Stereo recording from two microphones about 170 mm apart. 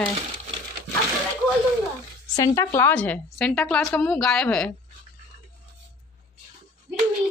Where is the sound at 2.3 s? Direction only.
20° left (ahead or behind); by 4.7 s 5° left (ahead or behind).